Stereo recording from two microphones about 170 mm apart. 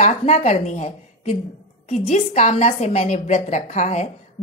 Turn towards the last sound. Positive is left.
turn(degrees=45)  # may be behind; listen again after turning